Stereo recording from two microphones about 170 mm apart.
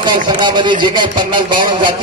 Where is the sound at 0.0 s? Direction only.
25° right (ahead or behind).